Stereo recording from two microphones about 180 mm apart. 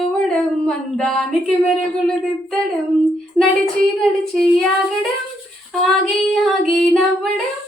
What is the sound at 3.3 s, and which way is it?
Child singing, 15° right (ahead or behind).